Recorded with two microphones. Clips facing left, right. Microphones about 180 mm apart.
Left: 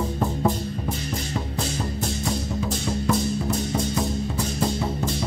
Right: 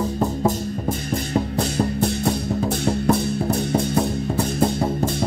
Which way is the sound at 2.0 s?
60° right (ahead or behind).